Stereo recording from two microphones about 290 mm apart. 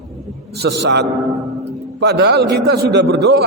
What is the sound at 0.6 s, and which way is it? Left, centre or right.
A man's voice, right.